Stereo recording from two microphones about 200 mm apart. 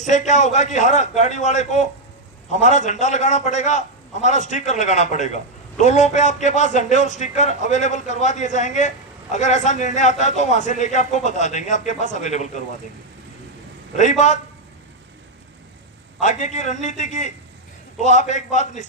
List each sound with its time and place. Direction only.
0.0 s a man's voice: 35° left (ahead or behind)
13.9 s a man's voice: 35° left (ahead or behind)
16.2 s a man's voice: 35° left (ahead or behind)